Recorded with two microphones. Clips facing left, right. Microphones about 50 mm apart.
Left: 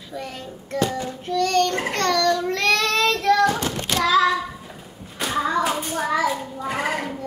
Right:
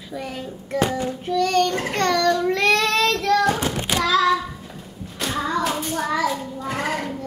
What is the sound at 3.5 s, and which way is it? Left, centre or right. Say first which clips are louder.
Child singing: right 1 dB; centre.